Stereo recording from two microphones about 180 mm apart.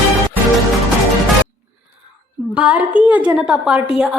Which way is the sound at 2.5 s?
5° right (ahead or behind).